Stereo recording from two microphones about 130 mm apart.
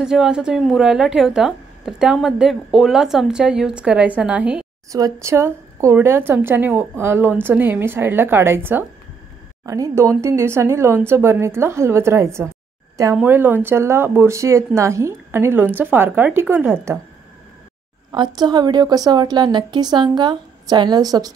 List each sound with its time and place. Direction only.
0.0 s a woman's voice: 5° right (ahead or behind)
4.9 s a woman's voice: 25° right (ahead or behind)
13.2 s a woman's voice: 15° right (ahead or behind)
18.1 s a woman's voice: 35° right (ahead or behind)